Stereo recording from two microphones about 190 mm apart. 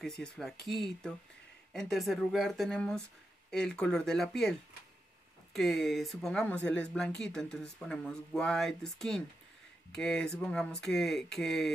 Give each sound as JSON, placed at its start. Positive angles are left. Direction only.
{"t": 0.0, "sound": "speech", "side_deg": 5}